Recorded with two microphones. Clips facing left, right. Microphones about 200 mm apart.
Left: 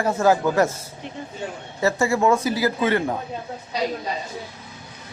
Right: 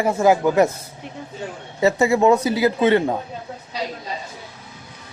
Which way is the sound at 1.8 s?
20° right (ahead or behind).